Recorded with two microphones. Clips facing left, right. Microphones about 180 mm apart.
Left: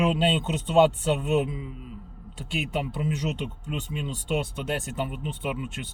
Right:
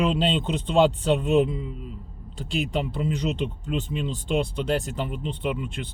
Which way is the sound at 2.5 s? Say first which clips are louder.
Right 3 dB; 5° left (ahead or behind).